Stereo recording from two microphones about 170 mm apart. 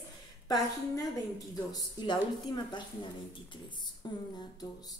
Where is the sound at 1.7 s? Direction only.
25° left (ahead or behind).